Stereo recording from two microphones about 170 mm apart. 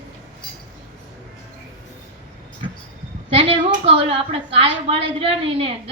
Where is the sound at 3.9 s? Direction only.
35° right (ahead or behind).